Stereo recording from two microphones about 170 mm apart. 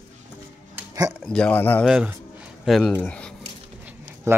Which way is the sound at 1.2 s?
5° left (ahead or behind).